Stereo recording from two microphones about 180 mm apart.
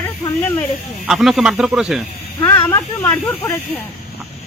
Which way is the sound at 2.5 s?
15° left (ahead or behind).